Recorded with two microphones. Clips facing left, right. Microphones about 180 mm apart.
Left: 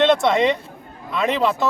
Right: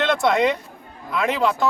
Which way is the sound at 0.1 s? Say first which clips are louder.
Left 2 dB; centre (ahead or behind).